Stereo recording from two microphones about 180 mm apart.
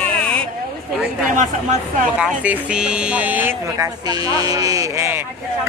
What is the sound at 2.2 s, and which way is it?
Speech, 5° right (ahead or behind).